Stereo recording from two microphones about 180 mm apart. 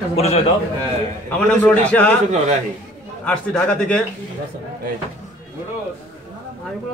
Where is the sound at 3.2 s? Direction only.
5° left (ahead or behind).